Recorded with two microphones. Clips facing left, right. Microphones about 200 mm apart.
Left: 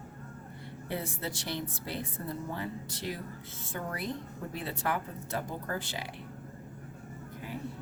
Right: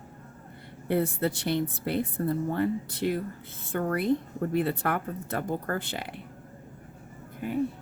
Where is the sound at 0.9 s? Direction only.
55° right (ahead or behind).